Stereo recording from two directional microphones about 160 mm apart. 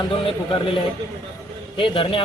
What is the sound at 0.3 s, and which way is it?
Speech, 35° left (ahead or behind).